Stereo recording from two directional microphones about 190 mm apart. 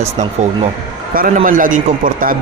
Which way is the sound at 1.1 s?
45° right (ahead or behind).